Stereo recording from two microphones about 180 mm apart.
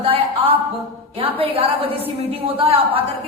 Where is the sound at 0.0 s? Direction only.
30° right (ahead or behind).